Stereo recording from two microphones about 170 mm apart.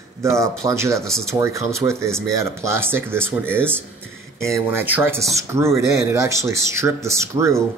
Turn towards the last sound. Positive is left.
turn(degrees=-15)  # may be behind; listen again after turning